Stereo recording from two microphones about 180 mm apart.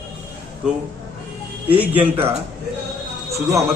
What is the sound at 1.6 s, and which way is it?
Speech, 10° right (ahead or behind).